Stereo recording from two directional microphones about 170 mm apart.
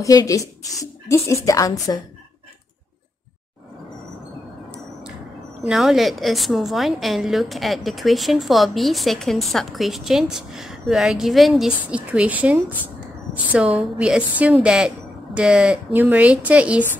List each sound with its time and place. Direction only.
0.0 s a woman's voice: 20° left (ahead or behind)
5.7 s a woman's voice: centre (ahead or behind)